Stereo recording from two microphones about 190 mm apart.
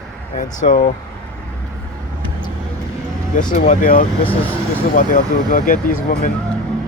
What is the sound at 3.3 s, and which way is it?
Speech, 40° left (ahead or behind).